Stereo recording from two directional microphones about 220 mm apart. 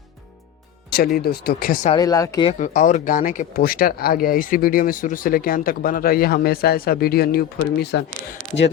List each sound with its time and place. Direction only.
0.9 s speech: 45° left (ahead or behind)
1.9 s speech: 15° left (ahead or behind)
2.5 s speech: 35° left (ahead or behind)